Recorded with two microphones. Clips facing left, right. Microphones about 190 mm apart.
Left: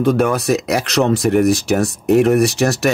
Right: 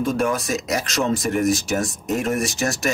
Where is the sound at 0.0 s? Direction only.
65° left (ahead or behind).